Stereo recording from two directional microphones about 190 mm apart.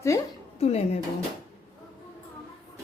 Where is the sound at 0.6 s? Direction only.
35° left (ahead or behind).